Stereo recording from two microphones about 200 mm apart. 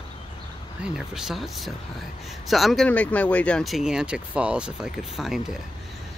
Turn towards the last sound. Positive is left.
turn(degrees=0)  # may be behind; listen again after turning